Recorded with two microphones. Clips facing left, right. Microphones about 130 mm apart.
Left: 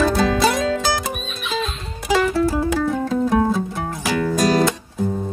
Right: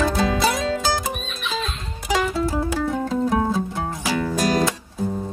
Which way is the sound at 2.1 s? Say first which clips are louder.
Left 4 dB; 15° right (ahead or behind).